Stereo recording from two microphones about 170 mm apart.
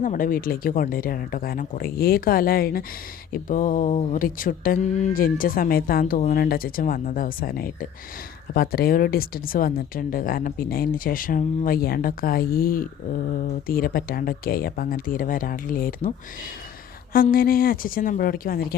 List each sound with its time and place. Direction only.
0.0 s speech: 50° left (ahead or behind)
17.3 s speech: 60° left (ahead or behind)